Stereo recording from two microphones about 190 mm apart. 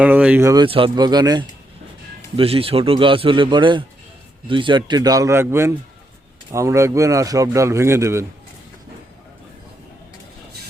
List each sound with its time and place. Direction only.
0.0 s speech: 5° right (ahead or behind)